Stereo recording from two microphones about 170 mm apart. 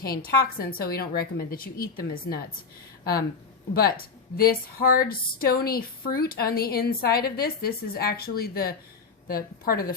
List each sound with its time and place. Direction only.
0.3 s speech: 60° left (ahead or behind)
3.8 s speech: 60° left (ahead or behind)